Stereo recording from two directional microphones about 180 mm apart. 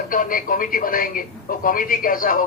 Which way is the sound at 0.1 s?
50° left (ahead or behind).